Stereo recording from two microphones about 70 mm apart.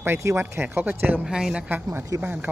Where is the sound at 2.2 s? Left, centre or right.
Right.